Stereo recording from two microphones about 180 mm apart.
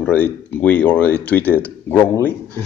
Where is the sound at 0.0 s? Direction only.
10° left (ahead or behind).